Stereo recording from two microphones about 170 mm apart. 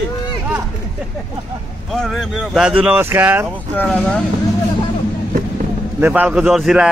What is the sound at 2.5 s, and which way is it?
Speech, 5° right (ahead or behind).